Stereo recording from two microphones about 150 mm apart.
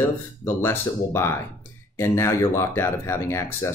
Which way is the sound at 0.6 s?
15° left (ahead or behind).